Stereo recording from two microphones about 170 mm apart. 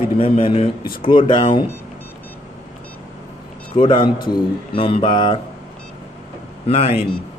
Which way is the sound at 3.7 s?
30° left (ahead or behind).